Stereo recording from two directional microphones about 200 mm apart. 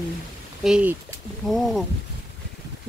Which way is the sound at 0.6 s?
5° right (ahead or behind).